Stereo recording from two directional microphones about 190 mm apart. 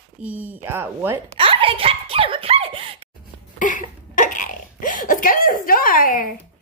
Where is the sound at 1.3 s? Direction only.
30° right (ahead or behind).